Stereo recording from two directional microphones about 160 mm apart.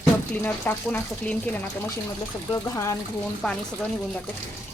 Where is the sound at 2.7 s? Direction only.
15° left (ahead or behind).